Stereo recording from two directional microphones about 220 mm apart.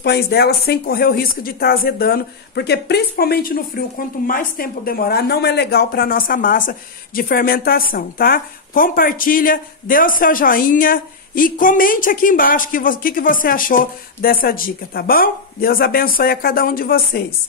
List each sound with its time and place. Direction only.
0.0 s speech: 45° left (ahead or behind)